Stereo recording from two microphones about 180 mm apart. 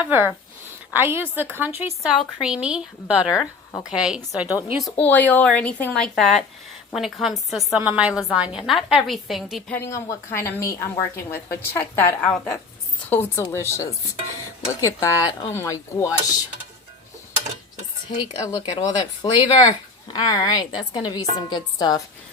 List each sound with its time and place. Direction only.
0.0 s a woman's voice: 10° right (ahead or behind)
4.8 s a woman's voice: 5° left (ahead or behind)
9.7 s a woman's voice: 15° left (ahead or behind)
18.4 s a woman's voice: 20° left (ahead or behind)